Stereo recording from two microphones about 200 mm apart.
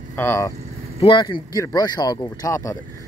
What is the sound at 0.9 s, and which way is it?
Speech, 25° left (ahead or behind).